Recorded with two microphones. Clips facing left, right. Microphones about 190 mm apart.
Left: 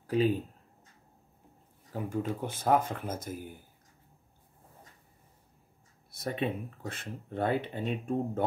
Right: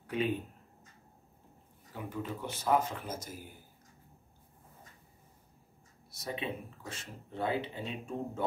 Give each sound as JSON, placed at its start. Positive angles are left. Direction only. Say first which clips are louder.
{"t": 0.0, "sound": "speech", "louder": "left 6 dB", "side_deg": 35}
{"t": 2.0, "sound": "speech", "louder": "left 6 dB", "side_deg": 45}
{"t": 6.1, "sound": "speech", "louder": "left 5 dB", "side_deg": 55}